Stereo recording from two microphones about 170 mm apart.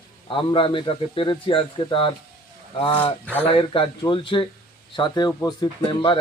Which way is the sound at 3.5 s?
30° left (ahead or behind).